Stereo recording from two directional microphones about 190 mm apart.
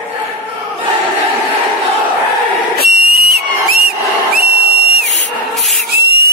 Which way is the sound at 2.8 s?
50° right (ahead or behind).